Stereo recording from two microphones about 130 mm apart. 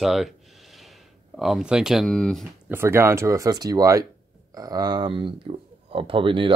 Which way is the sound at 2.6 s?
20° right (ahead or behind).